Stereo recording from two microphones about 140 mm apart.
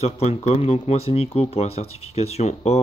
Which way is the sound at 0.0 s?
50° left (ahead or behind).